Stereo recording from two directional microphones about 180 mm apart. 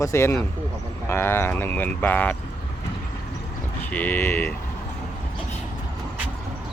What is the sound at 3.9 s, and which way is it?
Speech, 10° left (ahead or behind).